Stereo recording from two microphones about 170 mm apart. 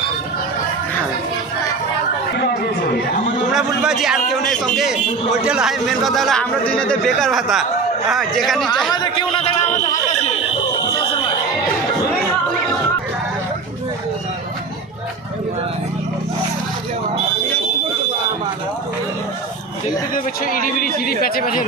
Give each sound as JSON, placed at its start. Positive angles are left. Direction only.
{"t": 3.5, "sound": "speech", "side_deg": 0}
{"t": 8.9, "sound": "a sound", "side_deg": 25}
{"t": 20.1, "sound": "speech", "side_deg": 55}